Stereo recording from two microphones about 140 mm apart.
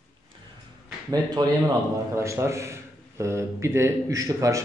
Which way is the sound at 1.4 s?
30° right (ahead or behind).